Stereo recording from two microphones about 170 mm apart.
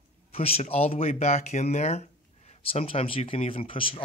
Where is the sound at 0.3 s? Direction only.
35° left (ahead or behind).